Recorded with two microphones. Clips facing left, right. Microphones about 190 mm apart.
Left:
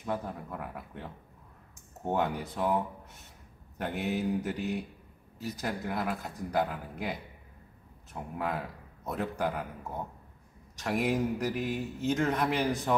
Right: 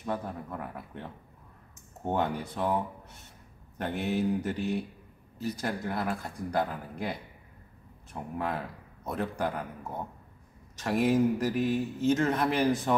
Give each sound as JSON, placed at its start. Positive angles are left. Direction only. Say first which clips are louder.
{"t": 0.0, "sound": "speech", "louder": "right 1 dB", "side_deg": 5}
{"t": 11.1, "sound": "speech", "louder": "right 6 dB", "side_deg": 0}
{"t": 11.6, "sound": "a man's voice", "louder": "right 5 dB", "side_deg": 15}
{"t": 12.1, "sound": "speech", "louder": "right 2 dB", "side_deg": 0}